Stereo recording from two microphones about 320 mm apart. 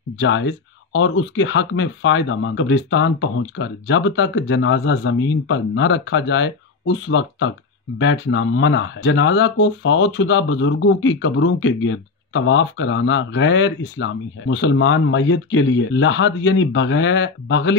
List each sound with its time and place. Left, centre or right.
0.2 s speech: left